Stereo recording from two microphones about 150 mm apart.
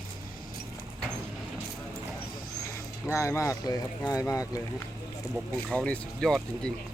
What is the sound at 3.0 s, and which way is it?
Speech, 20° left (ahead or behind).